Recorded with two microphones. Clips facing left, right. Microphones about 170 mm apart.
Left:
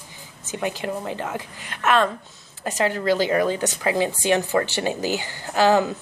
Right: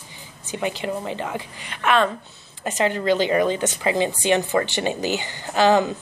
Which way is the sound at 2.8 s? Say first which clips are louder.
Right 1 dB; 5° left (ahead or behind).